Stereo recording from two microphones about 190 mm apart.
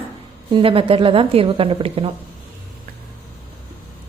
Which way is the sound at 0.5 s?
30° right (ahead or behind).